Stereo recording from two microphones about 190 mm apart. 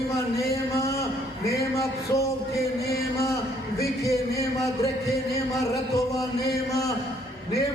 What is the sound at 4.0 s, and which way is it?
Speech, 15° left (ahead or behind).